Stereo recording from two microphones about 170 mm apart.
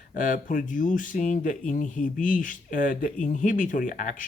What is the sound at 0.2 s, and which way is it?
Speech, 50° left (ahead or behind).